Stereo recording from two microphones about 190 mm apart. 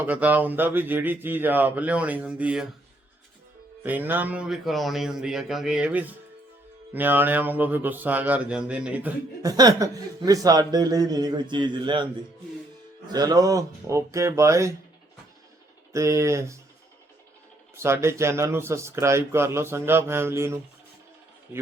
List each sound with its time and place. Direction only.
0.0 s speech: 10° right (ahead or behind)
3.8 s speech: 10° right (ahead or behind)
13.1 s speech: 20° right (ahead or behind)
15.9 s speech: 15° right (ahead or behind)
17.7 s speech: 15° right (ahead or behind)